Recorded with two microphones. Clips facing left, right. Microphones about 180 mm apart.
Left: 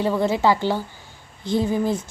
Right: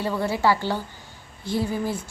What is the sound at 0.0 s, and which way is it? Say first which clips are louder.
A woman's voice: left 4 dB; 15° left (ahead or behind).